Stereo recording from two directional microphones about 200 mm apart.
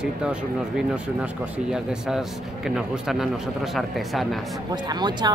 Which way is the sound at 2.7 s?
Centre (ahead or behind).